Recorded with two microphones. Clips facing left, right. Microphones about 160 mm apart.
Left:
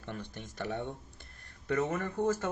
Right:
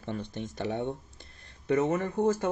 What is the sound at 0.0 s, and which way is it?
Speech, 25° right (ahead or behind).